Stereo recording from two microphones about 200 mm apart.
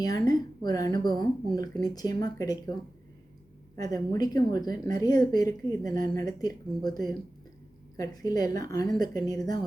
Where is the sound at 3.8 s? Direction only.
20° left (ahead or behind).